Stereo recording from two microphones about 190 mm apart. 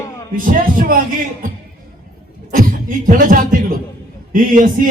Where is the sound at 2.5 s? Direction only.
45° right (ahead or behind).